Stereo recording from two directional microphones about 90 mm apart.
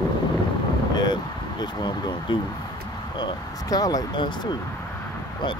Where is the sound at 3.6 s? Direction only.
45° left (ahead or behind); by 4.5 s 60° left (ahead or behind).